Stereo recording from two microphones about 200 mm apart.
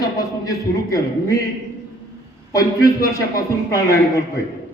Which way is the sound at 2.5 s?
20° left (ahead or behind).